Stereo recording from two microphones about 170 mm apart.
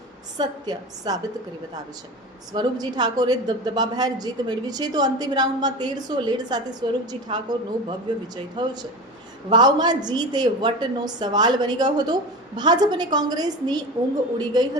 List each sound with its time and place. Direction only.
0.3 s a woman's voice: 25° right (ahead or behind)
2.5 s a woman's voice: 25° right (ahead or behind)